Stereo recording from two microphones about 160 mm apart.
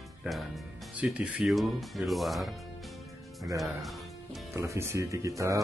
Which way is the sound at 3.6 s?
Centre (ahead or behind).